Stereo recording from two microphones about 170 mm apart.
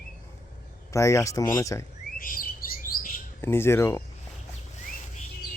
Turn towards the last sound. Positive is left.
turn(degrees=15)  # may be behind; listen again after turning